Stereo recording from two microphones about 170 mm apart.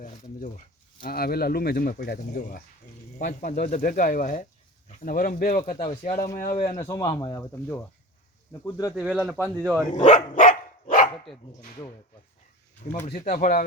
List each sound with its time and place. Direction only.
0.0 s speech: 50° left (ahead or behind)
1.0 s speech: 65° left (ahead or behind)
6.6 s speech: 35° left (ahead or behind)
6.8 s speech: 15° left (ahead or behind)
9.0 s speech: 10° right (ahead or behind)
9.9 s dog: 45° left (ahead or behind)
13.1 s speech: 50° left (ahead or behind)